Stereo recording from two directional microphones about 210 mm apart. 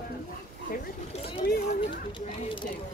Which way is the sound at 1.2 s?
50° left (ahead or behind).